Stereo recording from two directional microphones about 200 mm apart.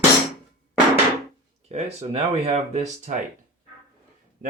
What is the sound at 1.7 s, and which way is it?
Speech, 30° right (ahead or behind).